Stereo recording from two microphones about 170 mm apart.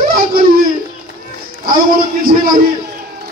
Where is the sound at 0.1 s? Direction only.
60° right (ahead or behind).